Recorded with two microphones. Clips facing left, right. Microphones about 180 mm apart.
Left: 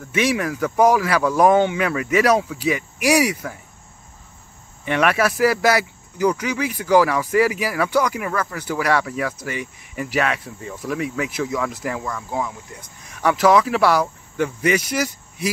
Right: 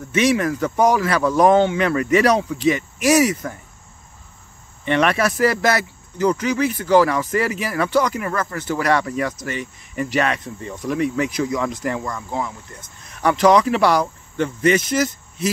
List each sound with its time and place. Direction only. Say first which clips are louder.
0.1 s speech: right 3 dB; 10° left (ahead or behind)
4.8 s speech: right 1 dB; 5° left (ahead or behind)